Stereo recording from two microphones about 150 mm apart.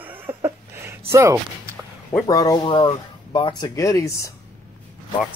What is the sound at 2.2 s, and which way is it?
Speech, 25° left (ahead or behind).